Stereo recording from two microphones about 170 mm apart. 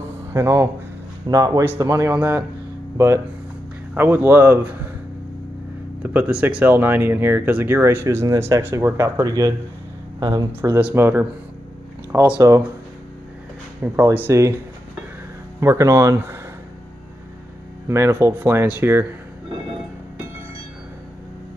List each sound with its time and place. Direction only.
0.3 s speech: 15° right (ahead or behind)
3.9 s speech: 10° right (ahead or behind)
6.0 s speech: 10° right (ahead or behind)
13.9 s speech: 10° right (ahead or behind)
15.6 s speech: 20° right (ahead or behind)
17.8 s speech: 15° right (ahead or behind)